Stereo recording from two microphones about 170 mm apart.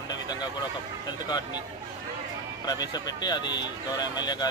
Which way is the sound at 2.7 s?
25° left (ahead or behind).